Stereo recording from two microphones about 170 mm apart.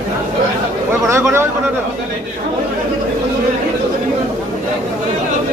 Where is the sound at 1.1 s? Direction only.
15° right (ahead or behind).